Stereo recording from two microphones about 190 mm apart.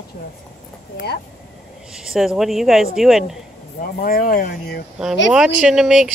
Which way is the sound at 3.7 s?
50° left (ahead or behind).